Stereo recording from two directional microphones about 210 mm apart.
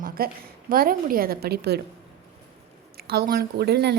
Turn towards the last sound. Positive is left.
turn(degrees=-50)  # may be behind; listen again after turning